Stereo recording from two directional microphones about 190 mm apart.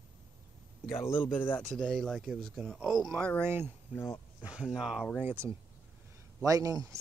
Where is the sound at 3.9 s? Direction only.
10° left (ahead or behind).